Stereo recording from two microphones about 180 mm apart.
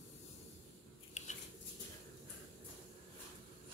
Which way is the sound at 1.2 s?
45° left (ahead or behind).